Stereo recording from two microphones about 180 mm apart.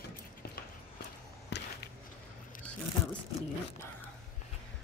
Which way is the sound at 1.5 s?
70° left (ahead or behind).